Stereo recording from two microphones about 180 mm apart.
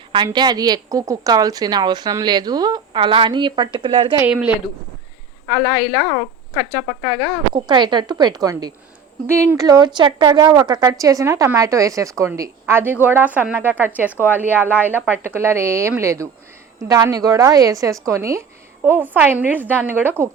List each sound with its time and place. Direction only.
0.3 s speech: 20° right (ahead or behind)
4.2 s a woman's voice: 10° right (ahead or behind)
5.5 s a woman's voice: 10° left (ahead or behind)
7.0 s speech: 5° left (ahead or behind)
7.5 s a woman's voice: 25° right (ahead or behind); by 14.1 s 10° right (ahead or behind)
14.1 s a woman's voice: 10° left (ahead or behind)
14.8 s a woman's voice: 10° right (ahead or behind)